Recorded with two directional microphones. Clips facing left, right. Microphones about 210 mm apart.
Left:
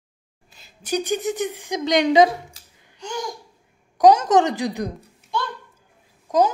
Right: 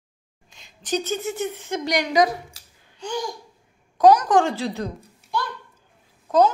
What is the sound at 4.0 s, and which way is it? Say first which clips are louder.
Speech: left 1 dB; 25° left (ahead or behind).